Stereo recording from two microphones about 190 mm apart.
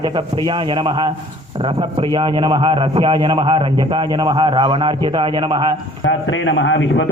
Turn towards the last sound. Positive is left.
turn(degrees=75)  # may be behind; listen again after turning